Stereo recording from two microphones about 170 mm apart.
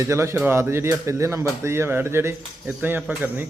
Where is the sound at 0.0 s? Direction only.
15° right (ahead or behind).